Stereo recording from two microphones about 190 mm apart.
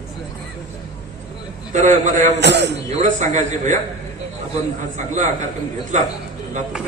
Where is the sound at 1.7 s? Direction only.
40° right (ahead or behind).